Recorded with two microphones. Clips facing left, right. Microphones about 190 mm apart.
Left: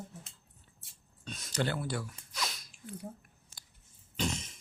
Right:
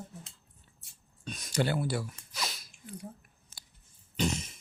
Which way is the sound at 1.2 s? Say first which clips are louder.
Right 3 dB; 15° right (ahead or behind).